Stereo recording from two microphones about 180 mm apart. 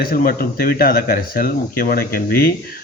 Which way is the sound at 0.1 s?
55° left (ahead or behind).